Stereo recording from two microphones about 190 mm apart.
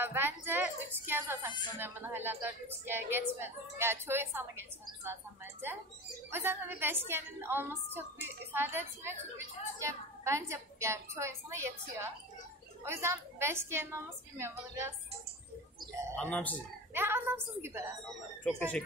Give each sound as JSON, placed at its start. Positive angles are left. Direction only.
{"t": 0.0, "sound": "a woman's voice", "side_deg": -10}
{"t": 16.2, "sound": "speech", "side_deg": 5}
{"t": 16.9, "sound": "a woman's voice", "side_deg": -10}
{"t": 18.4, "sound": "speech", "side_deg": 5}